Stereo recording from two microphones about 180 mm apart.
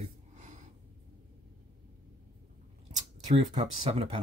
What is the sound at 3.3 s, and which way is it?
Speech, 40° right (ahead or behind).